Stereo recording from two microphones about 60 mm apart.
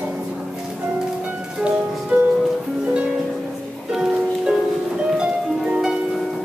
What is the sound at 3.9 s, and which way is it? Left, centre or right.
Music, centre.